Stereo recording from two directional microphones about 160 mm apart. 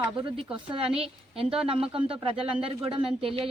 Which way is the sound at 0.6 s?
35° right (ahead or behind).